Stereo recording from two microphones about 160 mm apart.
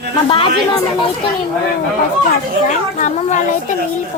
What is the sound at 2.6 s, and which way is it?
Speech, 45° left (ahead or behind).